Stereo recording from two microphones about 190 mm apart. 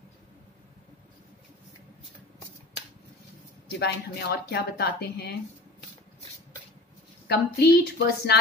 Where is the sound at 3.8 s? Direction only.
60° left (ahead or behind).